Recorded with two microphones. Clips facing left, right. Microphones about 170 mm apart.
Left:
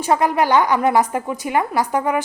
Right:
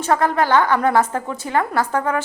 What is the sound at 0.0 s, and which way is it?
A woman's voice, 15° left (ahead or behind).